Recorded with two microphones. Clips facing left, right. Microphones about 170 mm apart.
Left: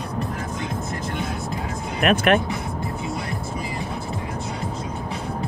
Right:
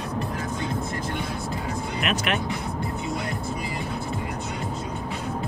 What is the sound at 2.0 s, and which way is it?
Speech, 55° left (ahead or behind).